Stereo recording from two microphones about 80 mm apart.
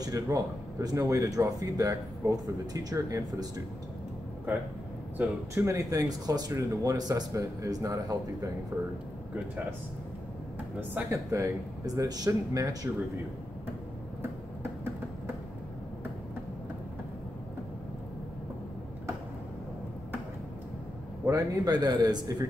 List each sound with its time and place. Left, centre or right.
0.0 s speech: right
4.5 s speech: right
5.5 s speech: right
8.7 s speech: centre
11.1 s speech: right
11.8 s speech: right
21.3 s speech: right